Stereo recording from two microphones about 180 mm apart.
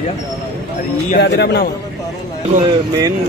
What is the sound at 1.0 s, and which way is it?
Speech, 70° left (ahead or behind).